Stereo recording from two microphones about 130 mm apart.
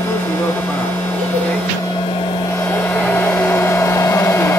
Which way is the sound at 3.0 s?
15° left (ahead or behind).